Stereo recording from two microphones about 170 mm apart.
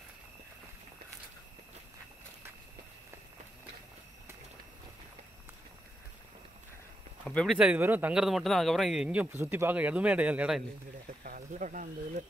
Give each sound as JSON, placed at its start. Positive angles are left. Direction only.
{"t": 7.2, "sound": "a man's voice", "side_deg": 5}
{"t": 11.2, "sound": "speech", "side_deg": -50}